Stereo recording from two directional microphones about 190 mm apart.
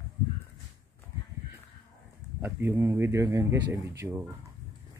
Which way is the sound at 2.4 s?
15° right (ahead or behind).